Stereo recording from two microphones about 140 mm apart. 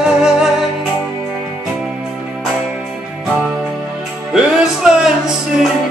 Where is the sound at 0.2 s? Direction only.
5° right (ahead or behind).